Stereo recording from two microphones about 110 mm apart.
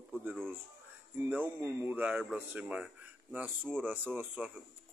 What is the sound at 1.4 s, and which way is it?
A man's voice, 30° right (ahead or behind).